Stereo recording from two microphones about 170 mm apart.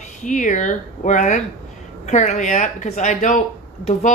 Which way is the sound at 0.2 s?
50° left (ahead or behind).